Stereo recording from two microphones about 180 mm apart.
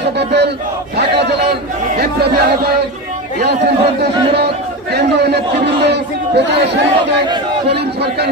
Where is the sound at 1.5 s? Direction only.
65° right (ahead or behind).